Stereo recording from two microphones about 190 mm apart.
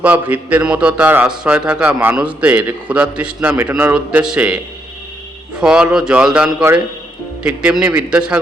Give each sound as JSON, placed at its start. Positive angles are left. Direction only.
{"t": 0.0, "sound": "a man's voice", "side_deg": -10}
{"t": 6.6, "sound": "a man's voice", "side_deg": -15}
{"t": 7.4, "sound": "speech", "side_deg": -5}